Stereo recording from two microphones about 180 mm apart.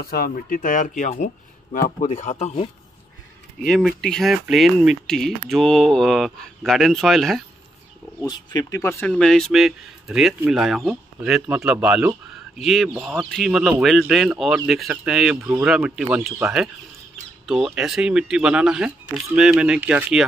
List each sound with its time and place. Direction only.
0.0 s speech: 55° left (ahead or behind); by 2.7 s 35° left (ahead or behind)
3.6 s speech: 5° left (ahead or behind)
8.3 s speech: 25° left (ahead or behind); by 20.2 s 5° right (ahead or behind)